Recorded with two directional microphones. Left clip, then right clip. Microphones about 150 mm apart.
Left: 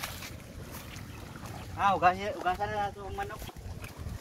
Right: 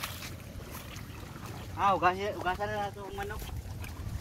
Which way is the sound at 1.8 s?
25° left (ahead or behind).